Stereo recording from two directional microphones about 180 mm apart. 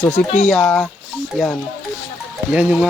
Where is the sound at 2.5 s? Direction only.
5° right (ahead or behind).